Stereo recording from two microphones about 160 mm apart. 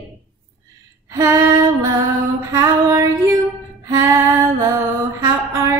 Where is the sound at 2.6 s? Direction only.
20° right (ahead or behind).